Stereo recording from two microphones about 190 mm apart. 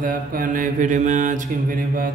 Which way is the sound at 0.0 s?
45° right (ahead or behind).